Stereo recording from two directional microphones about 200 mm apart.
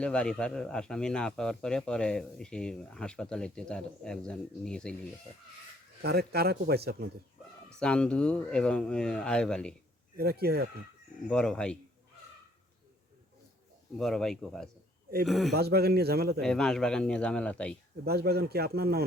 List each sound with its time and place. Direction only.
0.0 s speech: 5° left (ahead or behind)
6.0 s speech: 50° right (ahead or behind)
7.8 s speech: 5° left (ahead or behind)
10.2 s speech: 50° right (ahead or behind)
11.3 s speech: 5° left (ahead or behind)
14.0 s speech: centre (ahead or behind)
15.5 s speech: 50° right (ahead or behind)
16.4 s speech: 5° left (ahead or behind)
18.0 s speech: 50° right (ahead or behind)